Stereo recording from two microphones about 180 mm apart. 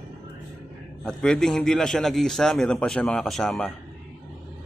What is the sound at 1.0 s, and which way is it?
A man's voice, 5° left (ahead or behind).